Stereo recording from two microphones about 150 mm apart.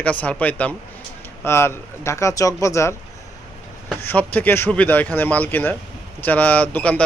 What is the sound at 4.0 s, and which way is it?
Speech, 10° left (ahead or behind).